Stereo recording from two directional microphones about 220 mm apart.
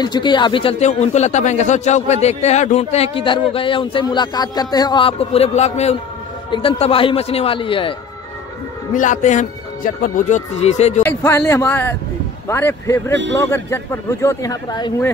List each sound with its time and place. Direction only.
0.0 s speech: 20° left (ahead or behind)
8.9 s speech: 35° left (ahead or behind)
11.0 s speech: 10° left (ahead or behind)
13.1 s a man's voice: 55° right (ahead or behind)
13.4 s speech: 15° left (ahead or behind)